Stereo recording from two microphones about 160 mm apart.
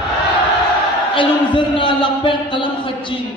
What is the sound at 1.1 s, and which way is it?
A man's voice, 30° left (ahead or behind).